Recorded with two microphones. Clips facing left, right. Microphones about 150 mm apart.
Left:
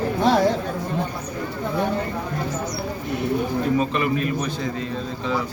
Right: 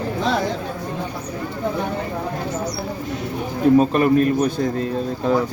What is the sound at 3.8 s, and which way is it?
Speech, 45° right (ahead or behind).